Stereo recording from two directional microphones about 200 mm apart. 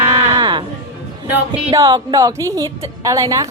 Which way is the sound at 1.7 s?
20° right (ahead or behind).